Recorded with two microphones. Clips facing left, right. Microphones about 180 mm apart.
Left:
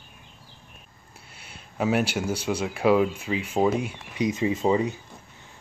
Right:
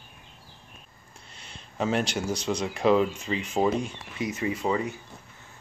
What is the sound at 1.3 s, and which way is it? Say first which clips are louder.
Speech: left 1 dB; 5° left (ahead or behind).